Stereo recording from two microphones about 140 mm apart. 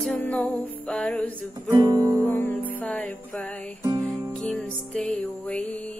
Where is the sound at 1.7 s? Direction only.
25° right (ahead or behind).